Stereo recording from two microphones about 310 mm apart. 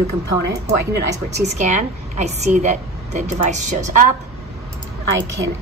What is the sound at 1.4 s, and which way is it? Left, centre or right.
A woman's voice, right.